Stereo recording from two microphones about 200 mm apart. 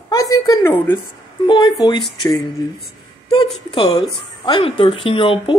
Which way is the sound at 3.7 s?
25° left (ahead or behind).